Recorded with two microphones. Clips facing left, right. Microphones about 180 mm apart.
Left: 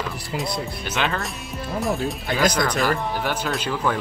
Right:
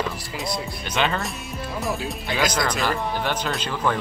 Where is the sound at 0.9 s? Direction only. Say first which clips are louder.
Right 2 dB; centre (ahead or behind).